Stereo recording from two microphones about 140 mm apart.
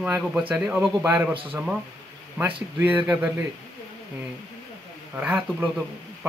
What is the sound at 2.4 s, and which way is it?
Speech, 10° right (ahead or behind).